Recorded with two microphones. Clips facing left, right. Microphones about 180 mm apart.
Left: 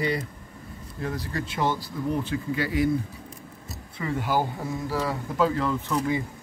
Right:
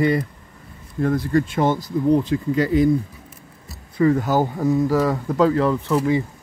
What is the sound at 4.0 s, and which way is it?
Speech, 45° right (ahead or behind).